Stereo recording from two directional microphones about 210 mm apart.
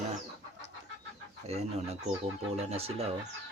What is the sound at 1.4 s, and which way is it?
Speech, 30° right (ahead or behind).